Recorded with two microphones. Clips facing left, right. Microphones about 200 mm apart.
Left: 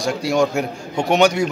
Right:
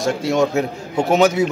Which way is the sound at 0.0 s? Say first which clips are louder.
Right 1 dB; centre (ahead or behind).